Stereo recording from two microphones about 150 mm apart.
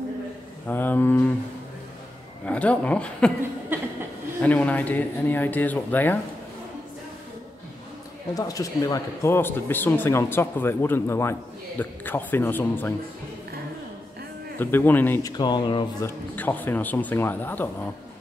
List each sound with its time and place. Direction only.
0.7 s speech: 10° left (ahead or behind)
2.4 s speech: 10° left (ahead or behind)
3.7 s speech: 15° right (ahead or behind)
4.4 s speech: 10° left (ahead or behind)
8.4 s speech: 25° left (ahead or behind)
14.6 s speech: 15° left (ahead or behind)
15.2 s speech: 30° left (ahead or behind)
16.3 s speech: 10° left (ahead or behind)